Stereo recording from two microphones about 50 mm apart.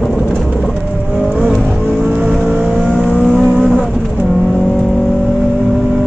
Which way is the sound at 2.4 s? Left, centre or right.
Right.